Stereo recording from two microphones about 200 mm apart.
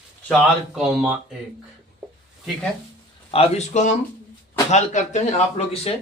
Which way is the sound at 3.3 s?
30° left (ahead or behind).